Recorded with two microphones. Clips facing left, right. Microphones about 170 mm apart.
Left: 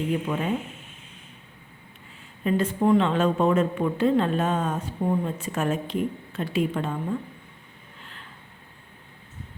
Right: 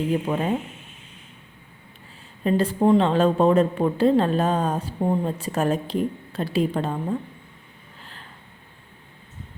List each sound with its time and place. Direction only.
0.1 s speech: 35° right (ahead or behind)
2.4 s speech: 35° right (ahead or behind)